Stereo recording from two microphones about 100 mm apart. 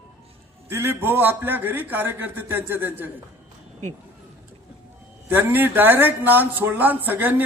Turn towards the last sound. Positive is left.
turn(degrees=-20)  # may be behind; listen again after turning